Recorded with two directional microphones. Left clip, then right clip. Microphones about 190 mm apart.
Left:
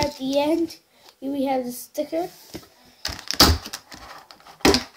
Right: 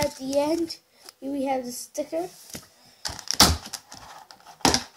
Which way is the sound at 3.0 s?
20° left (ahead or behind).